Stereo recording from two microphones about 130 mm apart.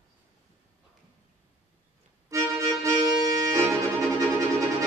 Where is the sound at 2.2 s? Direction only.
25° right (ahead or behind).